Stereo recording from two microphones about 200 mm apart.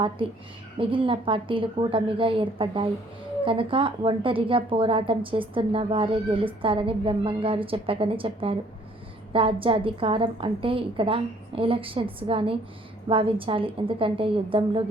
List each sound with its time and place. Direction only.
0.2 s a woman's voice: 25° right (ahead or behind)